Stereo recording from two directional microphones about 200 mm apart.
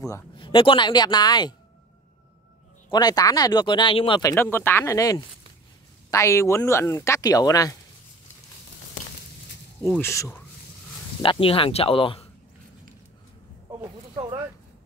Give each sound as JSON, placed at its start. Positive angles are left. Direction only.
{"t": 0.0, "sound": "speech", "side_deg": 20}
{"t": 2.9, "sound": "speech", "side_deg": 20}
{"t": 9.8, "sound": "speech", "side_deg": 10}
{"t": 11.1, "sound": "speech", "side_deg": 25}
{"t": 14.1, "sound": "speech", "side_deg": -25}